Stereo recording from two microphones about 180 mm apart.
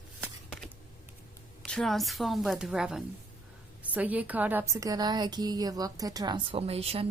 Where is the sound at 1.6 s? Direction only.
Centre (ahead or behind).